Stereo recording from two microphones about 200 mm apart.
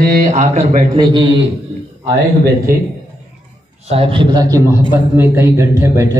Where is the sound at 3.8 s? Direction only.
25° right (ahead or behind).